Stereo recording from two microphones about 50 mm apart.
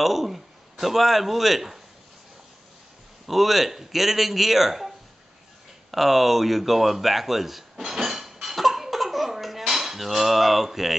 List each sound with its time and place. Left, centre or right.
0.0 s a man's voice: centre
3.3 s speech: centre
5.9 s a sound: centre